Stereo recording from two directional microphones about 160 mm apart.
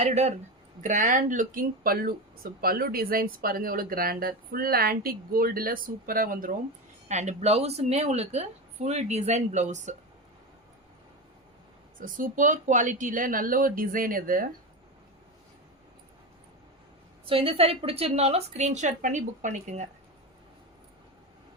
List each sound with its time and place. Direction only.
0.0 s a woman's voice: 45° right (ahead or behind)
7.1 s a woman's voice: 45° right (ahead or behind)
11.9 s speech: 55° right (ahead or behind)
17.2 s a woman's voice: 35° right (ahead or behind)